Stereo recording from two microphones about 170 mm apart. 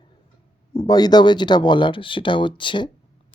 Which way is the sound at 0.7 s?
25° left (ahead or behind).